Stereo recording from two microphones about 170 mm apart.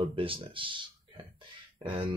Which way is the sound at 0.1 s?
30° right (ahead or behind).